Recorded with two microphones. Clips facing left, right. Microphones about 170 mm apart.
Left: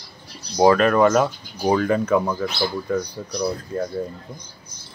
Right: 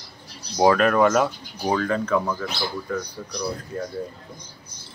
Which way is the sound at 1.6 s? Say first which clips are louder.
Left 4 dB; 10° left (ahead or behind).